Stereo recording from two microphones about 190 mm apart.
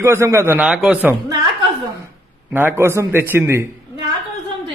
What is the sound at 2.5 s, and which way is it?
A man's voice, 10° right (ahead or behind).